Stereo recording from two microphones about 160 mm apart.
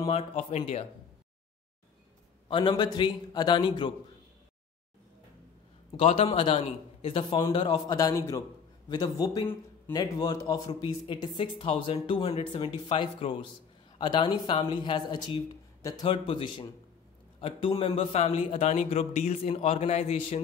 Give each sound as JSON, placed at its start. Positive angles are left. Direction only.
{"t": 0.1, "sound": "a man's voice", "side_deg": 35}
{"t": 2.4, "sound": "speech", "side_deg": 30}
{"t": 5.9, "sound": "a man's voice", "side_deg": 40}